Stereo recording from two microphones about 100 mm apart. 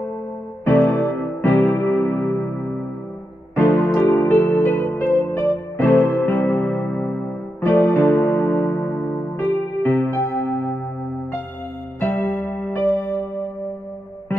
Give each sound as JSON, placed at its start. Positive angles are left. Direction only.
{"t": 0.7, "sound": "music", "side_deg": 20}
{"t": 3.5, "sound": "music", "side_deg": 25}
{"t": 12.0, "sound": "music", "side_deg": 15}